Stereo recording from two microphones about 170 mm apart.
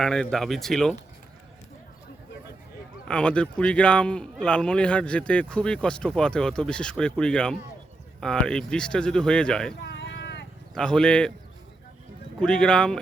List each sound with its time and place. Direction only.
0.0 s speech: 5° left (ahead or behind)
3.1 s speech: 5° left (ahead or behind)
9.8 s a sound: 90° left
10.8 s speech: 5° left (ahead or behind)
12.4 s speech: 5° left (ahead or behind)